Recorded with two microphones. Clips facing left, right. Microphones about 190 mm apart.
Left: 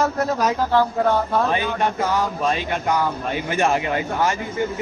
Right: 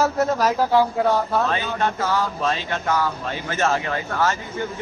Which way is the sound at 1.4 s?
15° left (ahead or behind).